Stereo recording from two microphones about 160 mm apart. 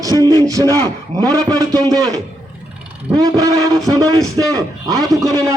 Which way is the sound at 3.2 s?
20° right (ahead or behind).